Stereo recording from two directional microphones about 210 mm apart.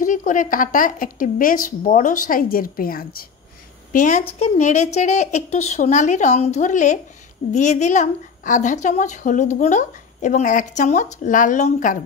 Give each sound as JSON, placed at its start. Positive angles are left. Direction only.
{"t": 0.0, "sound": "a woman's voice", "side_deg": 40}